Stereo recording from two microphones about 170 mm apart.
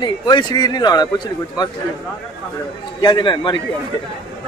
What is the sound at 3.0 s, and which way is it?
Speech, 25° left (ahead or behind).